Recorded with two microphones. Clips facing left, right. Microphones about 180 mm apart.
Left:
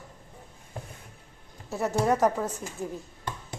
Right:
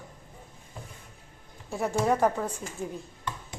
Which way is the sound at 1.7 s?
5° left (ahead or behind).